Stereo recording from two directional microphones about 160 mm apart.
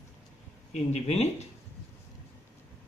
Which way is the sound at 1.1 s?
45° left (ahead or behind).